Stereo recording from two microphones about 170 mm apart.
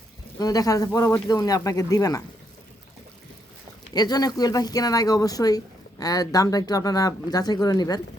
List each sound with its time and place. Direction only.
0.3 s speech: 20° left (ahead or behind)
3.9 s speech: 25° left (ahead or behind)